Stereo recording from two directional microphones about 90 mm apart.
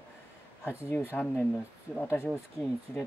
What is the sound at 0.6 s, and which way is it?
Speech, 25° left (ahead or behind).